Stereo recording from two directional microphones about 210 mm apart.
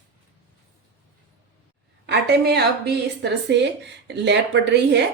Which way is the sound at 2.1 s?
50° right (ahead or behind).